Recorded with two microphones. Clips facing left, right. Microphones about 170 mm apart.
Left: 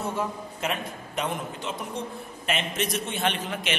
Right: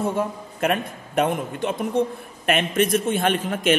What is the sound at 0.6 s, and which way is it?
A man's voice, 55° right (ahead or behind).